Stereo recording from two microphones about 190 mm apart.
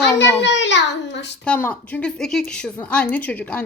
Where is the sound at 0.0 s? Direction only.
65° left (ahead or behind).